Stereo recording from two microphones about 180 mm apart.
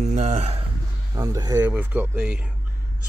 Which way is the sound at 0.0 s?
40° right (ahead or behind).